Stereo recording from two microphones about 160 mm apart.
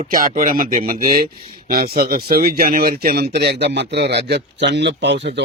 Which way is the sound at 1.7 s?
70° right (ahead or behind).